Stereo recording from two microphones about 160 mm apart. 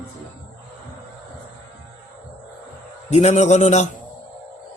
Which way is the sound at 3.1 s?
45° left (ahead or behind).